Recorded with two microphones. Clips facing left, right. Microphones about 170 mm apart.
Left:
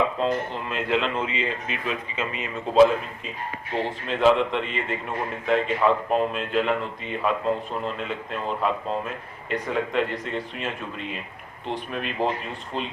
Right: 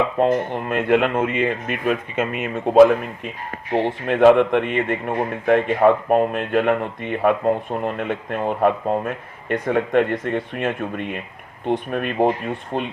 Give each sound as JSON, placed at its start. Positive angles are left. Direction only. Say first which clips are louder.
{"t": 0.2, "sound": "a man's voice", "louder": "right 7 dB", "side_deg": -55}